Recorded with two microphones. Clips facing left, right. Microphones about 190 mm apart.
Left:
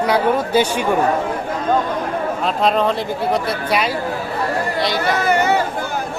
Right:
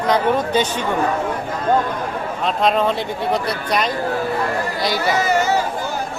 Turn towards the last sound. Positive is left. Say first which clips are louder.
# left 1 dB
turn(degrees=60)  # may be behind; listen again after turning